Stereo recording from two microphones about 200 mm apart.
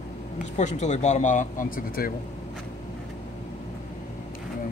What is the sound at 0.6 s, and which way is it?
Speech, 35° left (ahead or behind).